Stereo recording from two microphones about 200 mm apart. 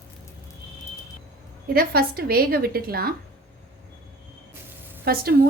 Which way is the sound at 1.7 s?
50° right (ahead or behind).